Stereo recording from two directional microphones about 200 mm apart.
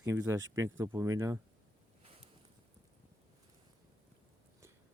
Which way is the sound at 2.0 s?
30° right (ahead or behind).